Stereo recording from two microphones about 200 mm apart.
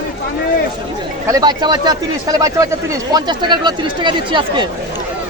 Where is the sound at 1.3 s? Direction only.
20° right (ahead or behind).